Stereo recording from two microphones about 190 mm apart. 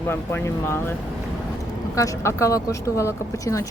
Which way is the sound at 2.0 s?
15° left (ahead or behind).